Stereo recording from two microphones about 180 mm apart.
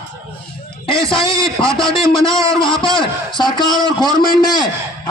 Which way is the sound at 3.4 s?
25° left (ahead or behind).